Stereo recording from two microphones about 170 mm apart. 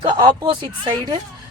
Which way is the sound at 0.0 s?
30° right (ahead or behind).